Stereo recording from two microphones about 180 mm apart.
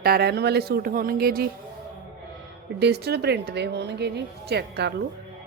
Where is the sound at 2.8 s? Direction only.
65° right (ahead or behind).